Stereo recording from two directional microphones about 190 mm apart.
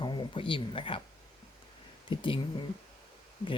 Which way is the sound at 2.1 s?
25° left (ahead or behind).